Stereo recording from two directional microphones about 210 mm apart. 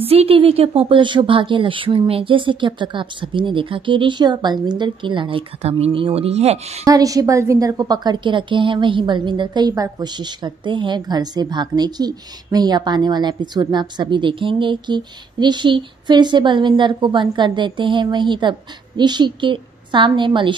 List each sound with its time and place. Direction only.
0.0 s a woman's voice: 30° right (ahead or behind)
6.8 s a woman's voice: 15° right (ahead or behind)